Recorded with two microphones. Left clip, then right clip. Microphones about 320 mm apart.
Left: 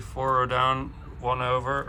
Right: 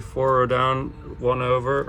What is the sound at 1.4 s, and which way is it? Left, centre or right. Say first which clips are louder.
Speech: right 3 dB; centre.